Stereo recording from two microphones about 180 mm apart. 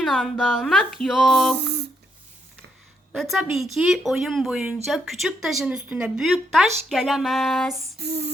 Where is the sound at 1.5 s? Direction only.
70° right (ahead or behind).